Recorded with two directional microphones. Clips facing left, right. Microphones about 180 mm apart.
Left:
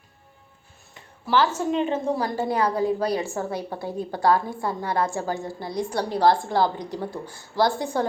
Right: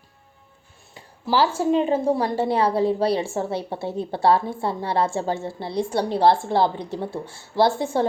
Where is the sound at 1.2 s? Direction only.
30° right (ahead or behind).